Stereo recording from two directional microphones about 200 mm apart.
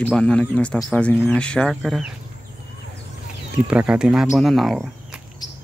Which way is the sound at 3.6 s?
5° right (ahead or behind).